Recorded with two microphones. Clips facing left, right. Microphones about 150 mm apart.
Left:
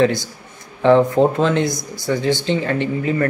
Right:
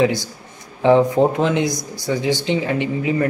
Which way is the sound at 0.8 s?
15° right (ahead or behind).